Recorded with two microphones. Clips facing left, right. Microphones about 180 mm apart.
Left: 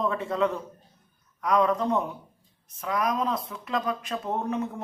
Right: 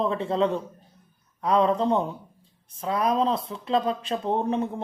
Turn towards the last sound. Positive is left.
turn(degrees=-30)  # may be behind; listen again after turning